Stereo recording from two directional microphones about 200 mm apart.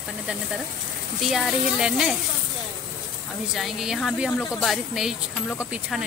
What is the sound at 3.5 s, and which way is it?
Speech, centre (ahead or behind).